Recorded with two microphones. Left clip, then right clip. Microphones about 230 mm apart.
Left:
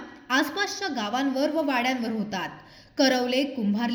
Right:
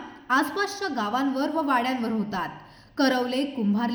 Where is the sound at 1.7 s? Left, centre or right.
Centre.